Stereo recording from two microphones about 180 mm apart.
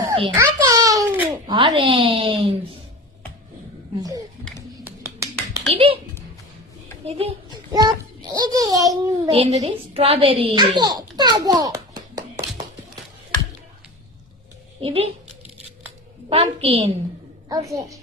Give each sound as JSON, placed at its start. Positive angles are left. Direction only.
{"t": 0.3, "sound": "a child's voice", "side_deg": -20}
{"t": 4.8, "sound": "finger snapping", "side_deg": -15}
{"t": 5.7, "sound": "a sound", "side_deg": -30}
{"t": 7.0, "sound": "a child's voice", "side_deg": -35}
{"t": 7.5, "sound": "a sound", "side_deg": -20}
{"t": 9.3, "sound": "a woman's voice", "side_deg": -35}
{"t": 14.8, "sound": "speech", "side_deg": -35}
{"t": 16.3, "sound": "a woman's voice", "side_deg": -35}
{"t": 17.5, "sound": "a woman's voice", "side_deg": -20}